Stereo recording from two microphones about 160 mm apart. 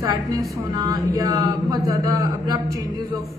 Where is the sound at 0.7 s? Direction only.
25° right (ahead or behind).